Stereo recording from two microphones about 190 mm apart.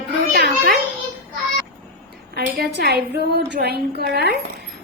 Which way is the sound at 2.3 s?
55° right (ahead or behind).